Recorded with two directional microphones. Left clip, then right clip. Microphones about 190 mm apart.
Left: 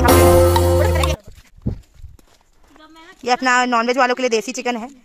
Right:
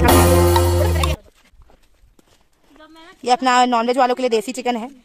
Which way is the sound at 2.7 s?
55° left (ahead or behind).